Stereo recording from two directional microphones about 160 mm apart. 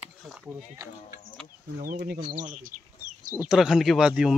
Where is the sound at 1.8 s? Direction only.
75° right (ahead or behind).